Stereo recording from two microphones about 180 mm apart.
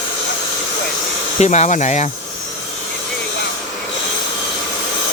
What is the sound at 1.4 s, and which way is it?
Speech, 40° left (ahead or behind).